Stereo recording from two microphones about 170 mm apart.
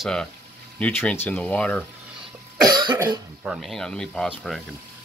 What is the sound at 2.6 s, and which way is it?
Cough, 25° right (ahead or behind).